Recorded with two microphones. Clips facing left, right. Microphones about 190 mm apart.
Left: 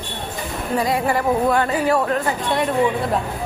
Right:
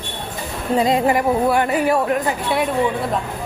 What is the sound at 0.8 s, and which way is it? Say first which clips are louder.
A woman's voice: right 4 dB; 20° right (ahead or behind).